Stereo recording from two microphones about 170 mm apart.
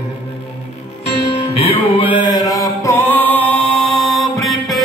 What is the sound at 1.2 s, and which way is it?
Music, 35° left (ahead or behind).